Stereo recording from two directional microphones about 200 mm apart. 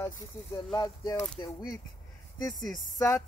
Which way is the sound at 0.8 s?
25° left (ahead or behind).